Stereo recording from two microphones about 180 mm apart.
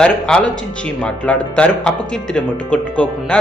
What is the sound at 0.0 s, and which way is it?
Speech, 5° left (ahead or behind).